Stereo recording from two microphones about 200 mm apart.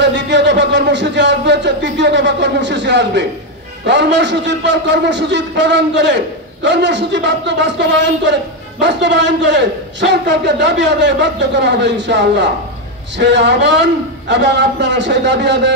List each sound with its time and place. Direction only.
0.0 s a man's voice: 60° right (ahead or behind)